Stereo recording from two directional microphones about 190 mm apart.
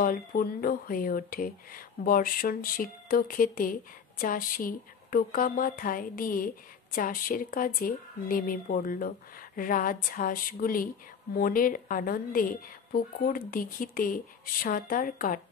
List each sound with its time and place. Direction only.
0.0 s speech: 50° left (ahead or behind)